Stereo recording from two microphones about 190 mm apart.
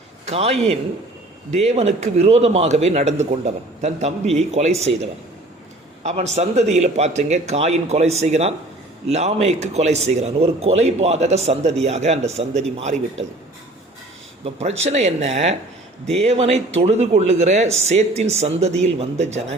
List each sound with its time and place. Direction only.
0.3 s speech: 30° right (ahead or behind)
6.0 s speech: 35° right (ahead or behind)
14.4 s speech: 35° right (ahead or behind)